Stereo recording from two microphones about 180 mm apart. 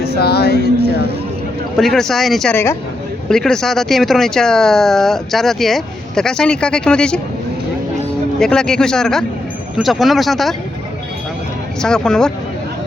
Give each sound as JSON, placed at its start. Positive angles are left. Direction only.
{"t": 0.0, "sound": "speech", "side_deg": 60}
{"t": 1.7, "sound": "speech", "side_deg": 0}
{"t": 8.4, "sound": "speech", "side_deg": 5}
{"t": 11.8, "sound": "speech", "side_deg": 5}